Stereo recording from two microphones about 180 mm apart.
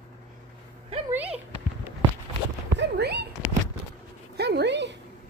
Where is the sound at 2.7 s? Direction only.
70° right (ahead or behind).